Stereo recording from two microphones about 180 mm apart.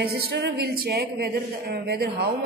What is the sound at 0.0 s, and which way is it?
A woman's voice, 65° right (ahead or behind).